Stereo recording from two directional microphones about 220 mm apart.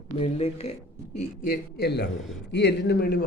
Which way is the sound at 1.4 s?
40° left (ahead or behind).